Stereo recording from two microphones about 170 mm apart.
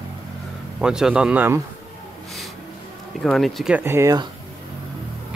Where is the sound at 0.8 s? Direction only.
5° right (ahead or behind).